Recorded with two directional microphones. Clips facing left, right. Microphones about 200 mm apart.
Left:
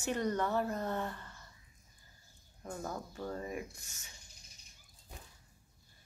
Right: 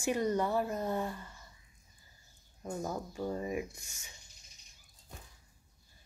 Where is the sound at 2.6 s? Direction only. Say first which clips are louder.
Right 4 dB; 10° right (ahead or behind).